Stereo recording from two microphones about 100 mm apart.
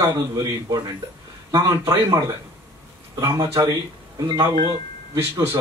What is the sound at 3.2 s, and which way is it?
Speech, 30° right (ahead or behind).